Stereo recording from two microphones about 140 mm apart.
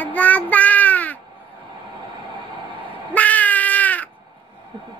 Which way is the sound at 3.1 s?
10° left (ahead or behind).